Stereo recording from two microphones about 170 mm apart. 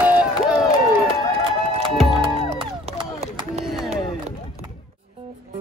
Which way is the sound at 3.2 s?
40° right (ahead or behind).